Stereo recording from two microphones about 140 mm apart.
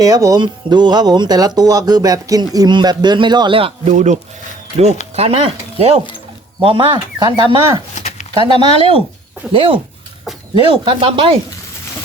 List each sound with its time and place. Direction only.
0.0 s speech: 25° right (ahead or behind)
3.8 s speech: 55° right (ahead or behind)
5.1 s speech: 45° right (ahead or behind)
7.9 s a sound: 55° left (ahead or behind)
8.3 s speech: 35° right (ahead or behind)